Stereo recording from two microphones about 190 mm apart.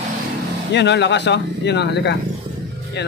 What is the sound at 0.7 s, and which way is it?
Speech, 65° left (ahead or behind).